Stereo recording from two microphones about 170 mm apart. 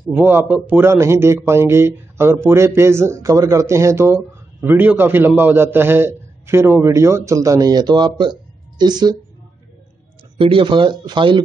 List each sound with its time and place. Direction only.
0.1 s a man's voice: 10° right (ahead or behind)
10.3 s speech: 30° right (ahead or behind)